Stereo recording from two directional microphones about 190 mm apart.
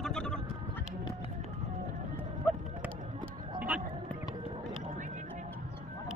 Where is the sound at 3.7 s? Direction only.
5° right (ahead or behind).